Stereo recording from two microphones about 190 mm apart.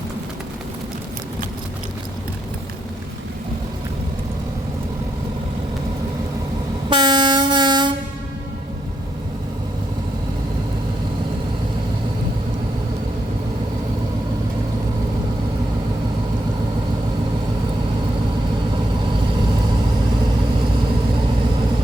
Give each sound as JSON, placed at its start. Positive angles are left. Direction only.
{"t": 6.9, "sound": "train", "side_deg": -25}